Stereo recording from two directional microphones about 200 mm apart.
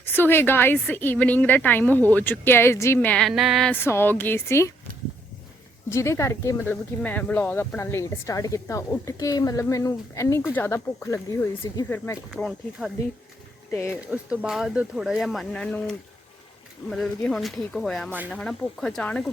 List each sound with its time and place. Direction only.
0.0 s speech: 10° left (ahead or behind)
5.9 s speech: 15° left (ahead or behind)
12.3 s speech: centre (ahead or behind)
13.7 s speech: 10° left (ahead or behind)
14.1 s speech: 5° right (ahead or behind)
16.9 s speech: centre (ahead or behind)
18.1 s speech: 10° right (ahead or behind)
18.3 s speech: 5° left (ahead or behind)